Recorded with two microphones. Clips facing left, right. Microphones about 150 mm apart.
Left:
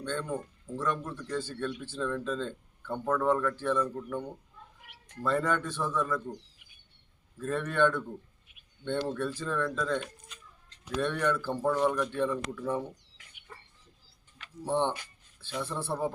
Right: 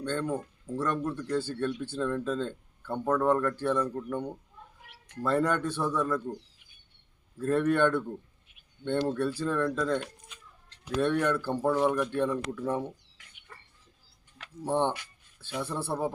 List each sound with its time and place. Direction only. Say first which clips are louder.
0.0 s a man's voice: right 3 dB; 10° right (ahead or behind)
5.2 s a man's voice: right 2 dB; 10° right (ahead or behind)
7.3 s a man's voice: right 4 dB; 10° right (ahead or behind)
13.5 s music: left 2 dB; 15° left (ahead or behind)
14.6 s a man's voice: right 1 dB; 15° right (ahead or behind)